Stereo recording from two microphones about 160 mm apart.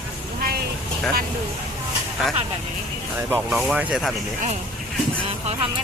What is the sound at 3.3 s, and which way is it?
Speech, 5° right (ahead or behind).